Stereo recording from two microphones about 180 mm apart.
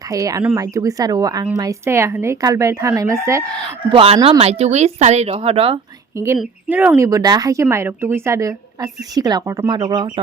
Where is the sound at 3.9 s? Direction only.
30° right (ahead or behind).